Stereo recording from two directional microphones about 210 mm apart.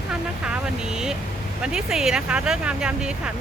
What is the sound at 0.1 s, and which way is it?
Vehicle, 5° right (ahead or behind).